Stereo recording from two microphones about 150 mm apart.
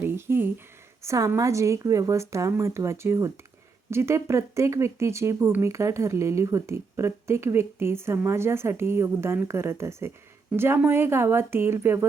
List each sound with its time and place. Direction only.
0.0 s a woman's voice: 15° right (ahead or behind)